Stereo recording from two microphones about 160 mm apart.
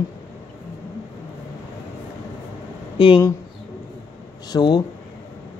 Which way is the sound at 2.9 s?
35° left (ahead or behind).